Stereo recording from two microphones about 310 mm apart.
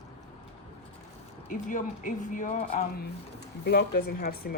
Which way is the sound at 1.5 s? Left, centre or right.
Left.